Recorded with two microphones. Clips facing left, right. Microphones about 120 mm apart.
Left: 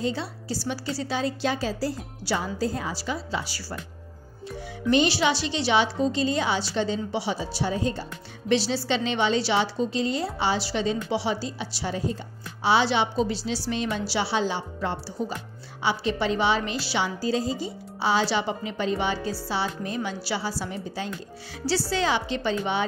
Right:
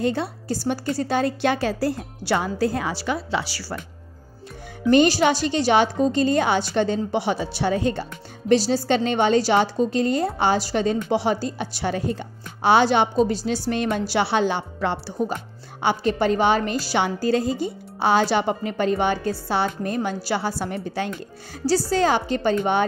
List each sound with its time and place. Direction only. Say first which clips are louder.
0.0 s a woman's voice: right 5 dB; 55° right (ahead or behind); by 3.7 s 80° right
4.9 s a woman's voice: right 5 dB; 50° right (ahead or behind); by 8.1 s 65° right (ahead or behind)
8.5 s a woman's voice: right 5 dB; 45° right (ahead or behind); by 15.1 s 70° right (ahead or behind)
15.8 s a woman's voice: right 5 dB; 50° right (ahead or behind)
17.0 s a woman's voice: right 4 dB; 55° right (ahead or behind)
21.6 s a woman's voice: right 5 dB; 45° right (ahead or behind)